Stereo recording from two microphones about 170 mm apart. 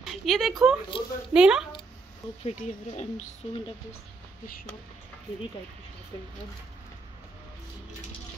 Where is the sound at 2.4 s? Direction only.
40° left (ahead or behind).